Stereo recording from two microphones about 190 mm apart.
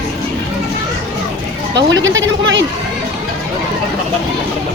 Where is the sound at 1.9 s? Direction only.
75° right (ahead or behind).